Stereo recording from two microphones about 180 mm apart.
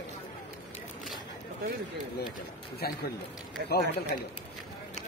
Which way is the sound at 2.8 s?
60° left (ahead or behind).